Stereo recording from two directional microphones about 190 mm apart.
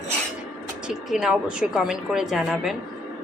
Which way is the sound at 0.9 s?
5° right (ahead or behind).